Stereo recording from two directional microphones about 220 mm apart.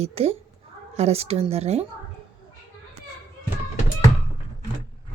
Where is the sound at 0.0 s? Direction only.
25° right (ahead or behind).